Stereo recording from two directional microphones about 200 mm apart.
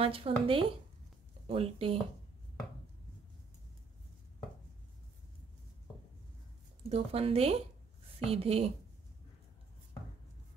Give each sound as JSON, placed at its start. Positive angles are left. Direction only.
{"t": 0.0, "sound": "speech", "side_deg": -30}
{"t": 6.9, "sound": "speech", "side_deg": -30}